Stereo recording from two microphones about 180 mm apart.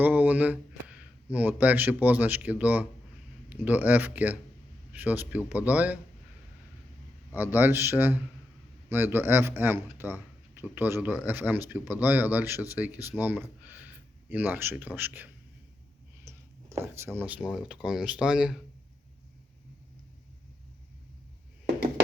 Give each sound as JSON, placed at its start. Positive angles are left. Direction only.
{"t": 0.0, "sound": "speech", "side_deg": -10}
{"t": 7.3, "sound": "speech", "side_deg": -10}
{"t": 16.3, "sound": "a sound", "side_deg": -15}
{"t": 16.8, "sound": "speech", "side_deg": -15}